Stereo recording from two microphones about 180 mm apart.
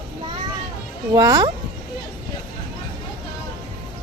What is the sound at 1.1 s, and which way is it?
Speech, 20° right (ahead or behind).